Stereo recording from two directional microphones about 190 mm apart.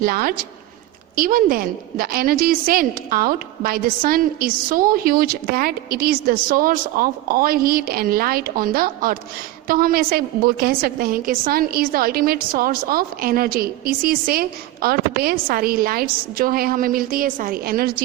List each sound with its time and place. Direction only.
0.0 s a woman's voice: 50° right (ahead or behind)